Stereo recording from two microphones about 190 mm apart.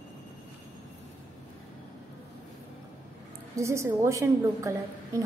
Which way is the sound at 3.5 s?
15° right (ahead or behind).